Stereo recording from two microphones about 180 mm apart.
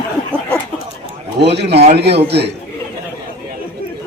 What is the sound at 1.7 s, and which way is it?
Speech, 35° right (ahead or behind).